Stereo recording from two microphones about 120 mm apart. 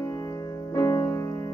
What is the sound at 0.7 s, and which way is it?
Music, 25° left (ahead or behind).